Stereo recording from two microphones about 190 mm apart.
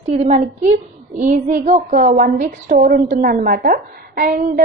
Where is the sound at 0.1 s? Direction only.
35° right (ahead or behind).